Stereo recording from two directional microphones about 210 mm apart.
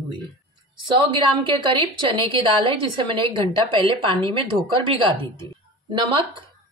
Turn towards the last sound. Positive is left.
turn(degrees=-25)  # may be behind; listen again after turning